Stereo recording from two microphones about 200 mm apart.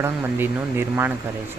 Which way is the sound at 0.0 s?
10° right (ahead or behind).